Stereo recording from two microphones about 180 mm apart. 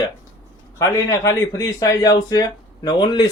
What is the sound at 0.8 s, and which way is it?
A man's voice, 15° left (ahead or behind).